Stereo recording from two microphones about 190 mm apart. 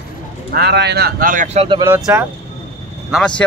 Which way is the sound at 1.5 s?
25° right (ahead or behind).